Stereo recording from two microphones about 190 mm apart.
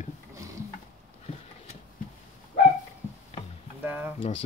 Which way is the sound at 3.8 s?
10° right (ahead or behind).